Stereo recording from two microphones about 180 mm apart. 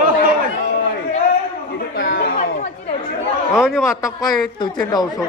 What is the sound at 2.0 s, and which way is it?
Chatter, 60° left (ahead or behind).